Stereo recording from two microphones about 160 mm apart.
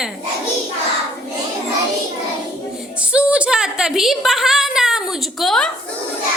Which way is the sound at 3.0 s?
5° right (ahead or behind).